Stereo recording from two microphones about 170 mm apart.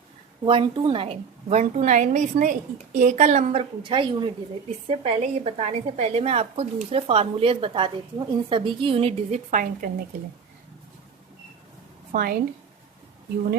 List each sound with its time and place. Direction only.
0.4 s a woman's voice: 30° right (ahead or behind); by 9.9 s 50° right (ahead or behind)
12.1 s a woman's voice: 60° right (ahead or behind)